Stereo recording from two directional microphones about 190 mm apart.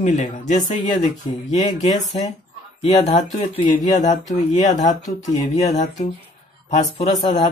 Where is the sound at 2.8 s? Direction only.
35° left (ahead or behind).